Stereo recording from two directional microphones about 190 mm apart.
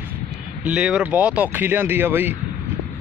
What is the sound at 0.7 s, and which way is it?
Speech, 5° right (ahead or behind).